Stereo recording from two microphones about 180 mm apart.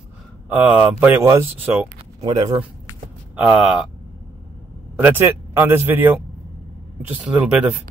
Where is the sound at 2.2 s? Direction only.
20° right (ahead or behind).